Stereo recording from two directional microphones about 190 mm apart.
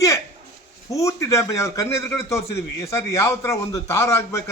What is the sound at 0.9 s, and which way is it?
A man's voice, 15° left (ahead or behind).